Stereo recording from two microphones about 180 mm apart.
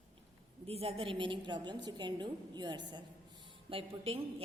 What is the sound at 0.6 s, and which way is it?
A woman's voice, 35° right (ahead or behind).